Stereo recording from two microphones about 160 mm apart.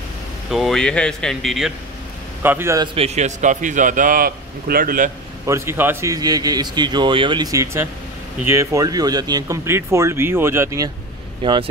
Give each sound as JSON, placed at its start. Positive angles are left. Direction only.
{"t": 0.5, "sound": "speech", "side_deg": 0}
{"t": 2.4, "sound": "speech", "side_deg": -15}
{"t": 2.9, "sound": "a man's voice", "side_deg": -40}
{"t": 5.5, "sound": "a man's voice", "side_deg": -15}
{"t": 11.4, "sound": "a man's voice", "side_deg": -30}